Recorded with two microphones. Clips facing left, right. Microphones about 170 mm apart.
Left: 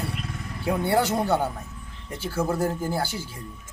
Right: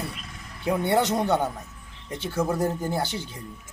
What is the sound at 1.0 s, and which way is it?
Speech, 5° left (ahead or behind).